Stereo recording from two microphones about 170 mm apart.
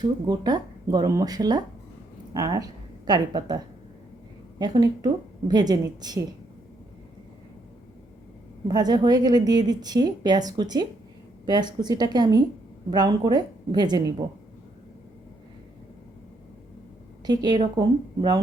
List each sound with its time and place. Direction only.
0.0 s a woman's voice: 25° right (ahead or behind)
8.6 s a woman's voice: 25° right (ahead or behind)
17.2 s a woman's voice: 25° right (ahead or behind)